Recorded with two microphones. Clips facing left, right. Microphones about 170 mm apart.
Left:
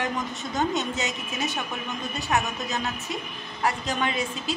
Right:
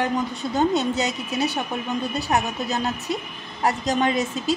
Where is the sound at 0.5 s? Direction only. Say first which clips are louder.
Right 6 dB; 35° right (ahead or behind).